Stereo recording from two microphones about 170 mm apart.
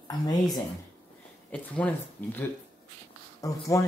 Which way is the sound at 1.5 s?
10° left (ahead or behind).